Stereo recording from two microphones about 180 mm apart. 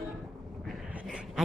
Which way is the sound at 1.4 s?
5° right (ahead or behind).